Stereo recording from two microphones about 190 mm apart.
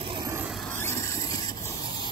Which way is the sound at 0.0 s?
25° right (ahead or behind).